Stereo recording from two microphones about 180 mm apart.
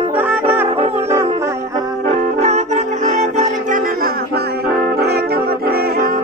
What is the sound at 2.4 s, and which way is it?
Music, 40° right (ahead or behind).